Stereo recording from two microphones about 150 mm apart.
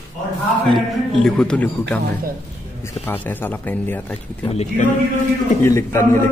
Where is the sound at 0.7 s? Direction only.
Centre (ahead or behind).